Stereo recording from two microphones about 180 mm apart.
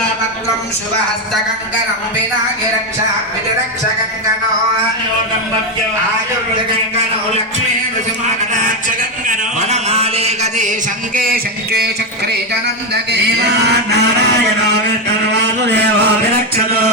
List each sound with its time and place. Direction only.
9.2 s speech: 40° right (ahead or behind); by 11.9 s 60° right (ahead or behind)
12.9 s a sound: 70° right (ahead or behind)
15.2 s a man's voice: 70° right (ahead or behind)